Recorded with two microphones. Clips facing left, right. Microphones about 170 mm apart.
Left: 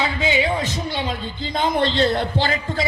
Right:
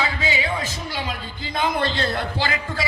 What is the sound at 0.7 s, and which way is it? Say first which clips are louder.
A man's voice: left 4 dB; 25° left (ahead or behind).